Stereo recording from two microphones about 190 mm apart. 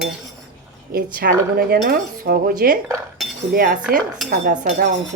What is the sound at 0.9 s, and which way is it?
Cutlery, 50° right (ahead or behind).